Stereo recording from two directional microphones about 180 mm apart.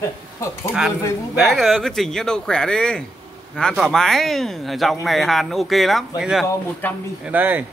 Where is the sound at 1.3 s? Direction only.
Centre (ahead or behind).